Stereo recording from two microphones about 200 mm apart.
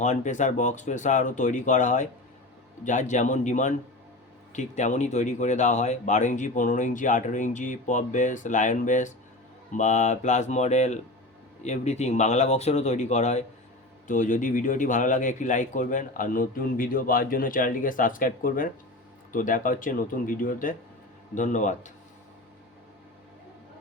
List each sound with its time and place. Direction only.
0.0 s a man's voice: 35° left (ahead or behind)